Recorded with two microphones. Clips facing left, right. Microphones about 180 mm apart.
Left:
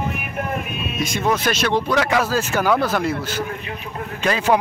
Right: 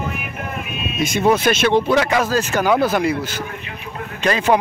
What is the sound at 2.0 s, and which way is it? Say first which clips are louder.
Speech: right 2 dB; centre (ahead or behind).